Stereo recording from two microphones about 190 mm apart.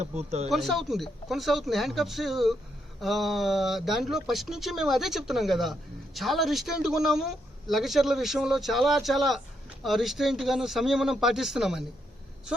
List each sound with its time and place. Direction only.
0.0 s speech: 35° right (ahead or behind)
0.5 s a man's voice: centre (ahead or behind)